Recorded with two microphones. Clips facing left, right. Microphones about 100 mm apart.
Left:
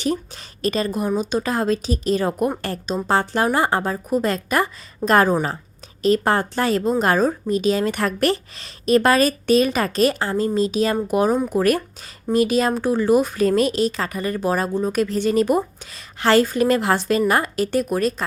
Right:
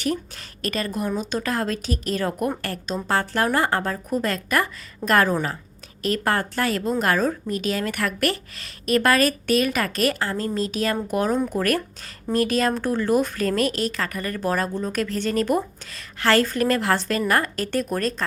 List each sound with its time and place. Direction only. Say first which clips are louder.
0.0 s a woman's voice: left 2 dB; 25° left (ahead or behind)